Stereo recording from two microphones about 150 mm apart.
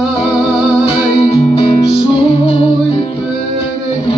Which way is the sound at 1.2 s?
40° left (ahead or behind).